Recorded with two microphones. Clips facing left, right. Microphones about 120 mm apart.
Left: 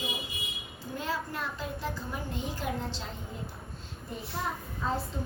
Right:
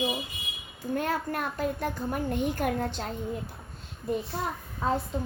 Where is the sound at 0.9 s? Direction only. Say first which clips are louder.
Right 5 dB; 55° right (ahead or behind).